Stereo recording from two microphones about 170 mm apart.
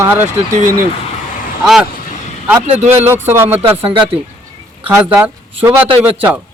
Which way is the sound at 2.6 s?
35° right (ahead or behind).